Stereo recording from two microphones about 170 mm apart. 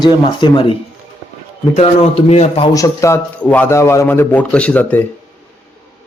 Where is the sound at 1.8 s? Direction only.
40° left (ahead or behind).